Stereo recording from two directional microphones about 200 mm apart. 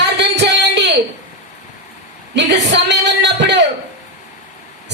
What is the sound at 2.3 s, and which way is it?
A woman's voice, 60° right (ahead or behind).